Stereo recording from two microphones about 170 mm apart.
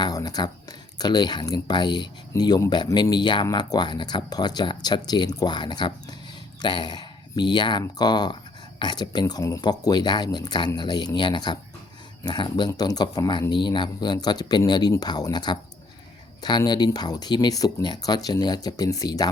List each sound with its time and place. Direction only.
0.0 s speech: 20° left (ahead or behind)